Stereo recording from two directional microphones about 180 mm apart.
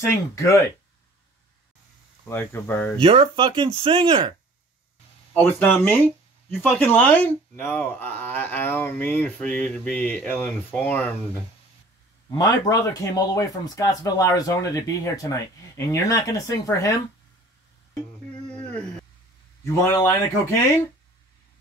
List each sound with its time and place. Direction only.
0.0 s speech: 15° left (ahead or behind)
2.2 s speech: 15° left (ahead or behind)
3.0 s speech: 30° right (ahead or behind)
5.3 s speech: 10° left (ahead or behind)
12.3 s speech: 20° left (ahead or behind)
19.9 s speech: 15° left (ahead or behind)